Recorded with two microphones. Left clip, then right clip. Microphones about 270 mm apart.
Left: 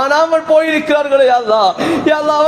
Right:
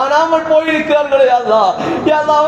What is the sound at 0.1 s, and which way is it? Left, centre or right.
A man's voice, left.